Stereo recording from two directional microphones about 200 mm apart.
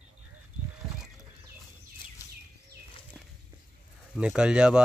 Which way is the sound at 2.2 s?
15° left (ahead or behind).